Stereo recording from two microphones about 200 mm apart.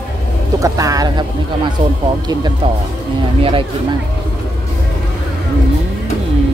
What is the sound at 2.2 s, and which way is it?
Speech, 20° right (ahead or behind).